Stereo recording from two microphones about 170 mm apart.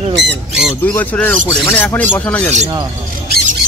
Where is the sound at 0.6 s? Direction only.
5° left (ahead or behind).